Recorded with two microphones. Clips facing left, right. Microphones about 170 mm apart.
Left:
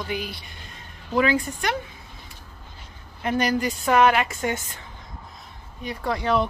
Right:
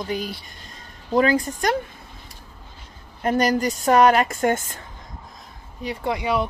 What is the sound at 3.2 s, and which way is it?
A woman's voice, 40° right (ahead or behind).